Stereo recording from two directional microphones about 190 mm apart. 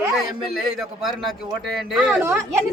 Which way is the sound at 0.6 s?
Centre (ahead or behind).